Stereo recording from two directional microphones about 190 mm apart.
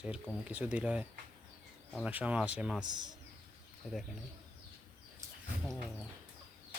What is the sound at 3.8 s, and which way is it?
Speech, 5° right (ahead or behind).